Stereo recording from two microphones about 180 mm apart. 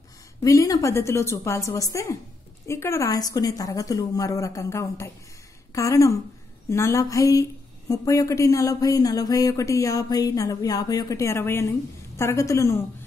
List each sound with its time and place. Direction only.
0.4 s a woman's voice: 20° left (ahead or behind)